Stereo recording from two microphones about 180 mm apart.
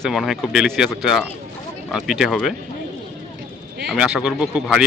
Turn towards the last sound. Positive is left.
turn(degrees=-5)  # may be behind; listen again after turning